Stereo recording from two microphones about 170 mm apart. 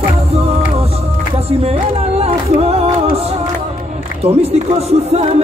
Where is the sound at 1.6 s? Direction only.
35° right (ahead or behind).